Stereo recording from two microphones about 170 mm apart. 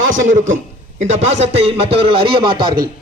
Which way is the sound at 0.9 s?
40° right (ahead or behind).